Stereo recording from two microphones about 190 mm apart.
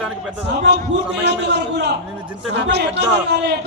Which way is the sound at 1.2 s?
60° right (ahead or behind).